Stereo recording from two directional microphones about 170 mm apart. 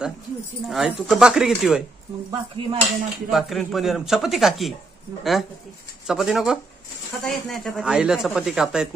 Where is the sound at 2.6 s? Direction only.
30° right (ahead or behind).